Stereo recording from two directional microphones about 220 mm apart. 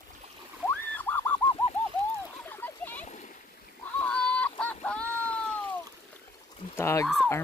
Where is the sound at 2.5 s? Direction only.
10° left (ahead or behind).